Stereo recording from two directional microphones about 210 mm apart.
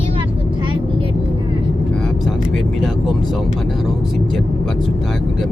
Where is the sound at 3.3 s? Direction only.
Centre (ahead or behind).